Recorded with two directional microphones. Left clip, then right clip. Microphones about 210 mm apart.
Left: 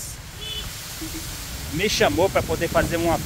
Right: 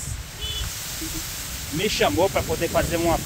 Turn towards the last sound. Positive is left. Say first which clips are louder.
# left 1 dB
turn(degrees=5)  # may be behind; listen again after turning